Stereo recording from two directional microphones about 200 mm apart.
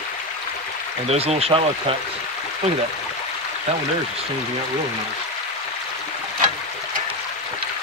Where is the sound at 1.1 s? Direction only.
30° right (ahead or behind).